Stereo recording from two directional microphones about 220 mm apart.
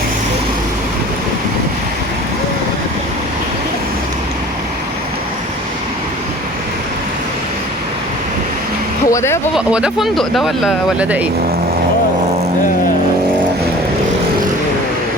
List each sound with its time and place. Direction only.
9.0 s vehicle: 15° left (ahead or behind)
9.6 s speech: 5° right (ahead or behind)